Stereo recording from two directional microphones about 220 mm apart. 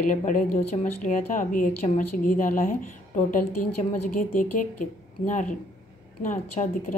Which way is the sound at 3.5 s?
90° left.